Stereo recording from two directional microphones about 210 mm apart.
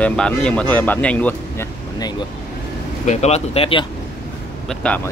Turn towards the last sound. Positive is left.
turn(degrees=5)  # may be behind; listen again after turning